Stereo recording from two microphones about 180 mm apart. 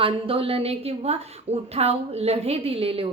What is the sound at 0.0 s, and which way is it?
A woman's voice, 30° right (ahead or behind).